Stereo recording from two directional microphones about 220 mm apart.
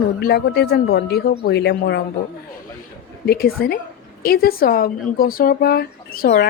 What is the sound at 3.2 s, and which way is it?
Speech, 45° left (ahead or behind).